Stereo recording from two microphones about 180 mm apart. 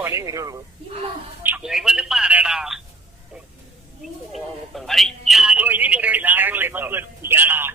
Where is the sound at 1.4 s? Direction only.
5° right (ahead or behind).